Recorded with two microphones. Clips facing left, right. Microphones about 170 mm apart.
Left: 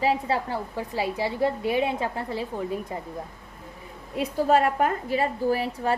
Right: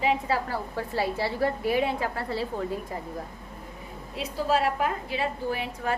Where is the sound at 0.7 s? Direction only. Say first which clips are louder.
Right 1 dB; 15° left (ahead or behind).